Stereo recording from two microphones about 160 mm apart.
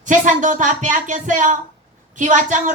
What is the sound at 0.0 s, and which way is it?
A woman's voice, 50° right (ahead or behind).